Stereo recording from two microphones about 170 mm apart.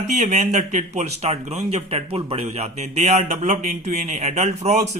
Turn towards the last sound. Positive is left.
turn(degrees=-40)  # may be behind; listen again after turning